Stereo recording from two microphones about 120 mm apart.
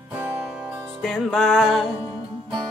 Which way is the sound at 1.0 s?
Centre (ahead or behind).